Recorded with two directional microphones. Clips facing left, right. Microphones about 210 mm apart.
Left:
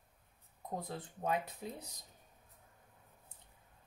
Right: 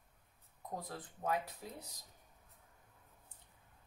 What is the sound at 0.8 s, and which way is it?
Speech, 20° left (ahead or behind).